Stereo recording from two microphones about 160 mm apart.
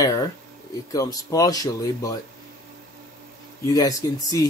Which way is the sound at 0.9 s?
20° left (ahead or behind).